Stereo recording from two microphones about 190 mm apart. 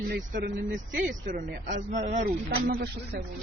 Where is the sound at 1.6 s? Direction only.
40° right (ahead or behind).